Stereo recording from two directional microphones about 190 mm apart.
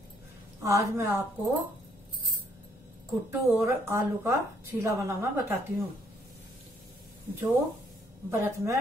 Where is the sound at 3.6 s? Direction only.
15° right (ahead or behind).